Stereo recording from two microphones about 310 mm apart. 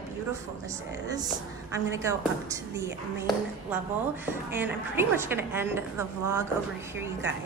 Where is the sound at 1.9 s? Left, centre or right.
Centre.